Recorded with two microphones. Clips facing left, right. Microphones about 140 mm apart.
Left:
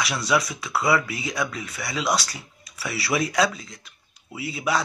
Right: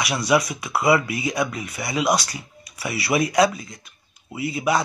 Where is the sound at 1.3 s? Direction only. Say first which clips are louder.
Right 3 dB; 15° right (ahead or behind).